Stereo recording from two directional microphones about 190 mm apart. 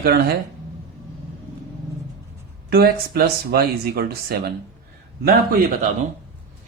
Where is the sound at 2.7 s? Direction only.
55° right (ahead or behind).